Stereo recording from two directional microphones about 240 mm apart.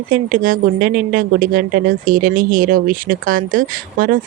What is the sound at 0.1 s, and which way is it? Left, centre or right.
A woman's voice, right.